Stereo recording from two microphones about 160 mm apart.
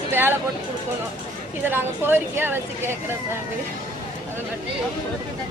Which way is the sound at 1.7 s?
15° right (ahead or behind).